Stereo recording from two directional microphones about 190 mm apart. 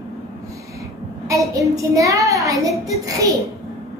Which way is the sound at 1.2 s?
15° right (ahead or behind).